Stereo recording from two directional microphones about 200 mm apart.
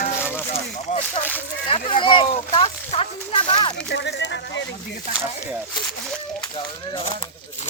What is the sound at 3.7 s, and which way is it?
Speech, 60° left (ahead or behind).